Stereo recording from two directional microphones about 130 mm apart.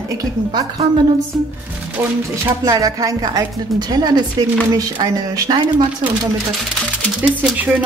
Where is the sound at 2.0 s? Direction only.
20° right (ahead or behind).